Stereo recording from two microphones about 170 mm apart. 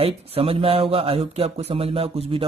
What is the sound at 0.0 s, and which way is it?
Speech, 35° right (ahead or behind).